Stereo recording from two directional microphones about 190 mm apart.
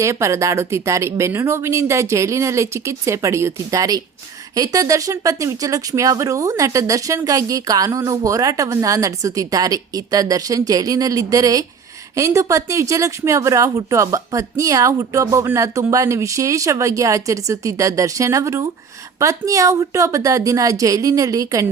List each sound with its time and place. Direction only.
0.0 s speech: 15° right (ahead or behind)